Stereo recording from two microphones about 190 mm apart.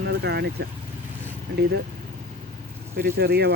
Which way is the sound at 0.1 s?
60° right (ahead or behind).